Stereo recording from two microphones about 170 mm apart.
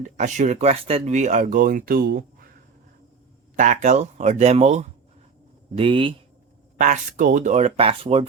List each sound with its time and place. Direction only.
0.0 s speech: 45° right (ahead or behind); by 2.5 s 60° right (ahead or behind)
3.5 s speech: 45° right (ahead or behind); by 6.1 s 30° right (ahead or behind)
6.7 s speech: 50° right (ahead or behind)